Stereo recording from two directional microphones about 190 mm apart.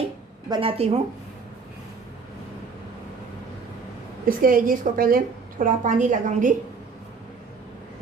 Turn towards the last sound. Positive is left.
turn(degrees=-45)  # may be behind; listen again after turning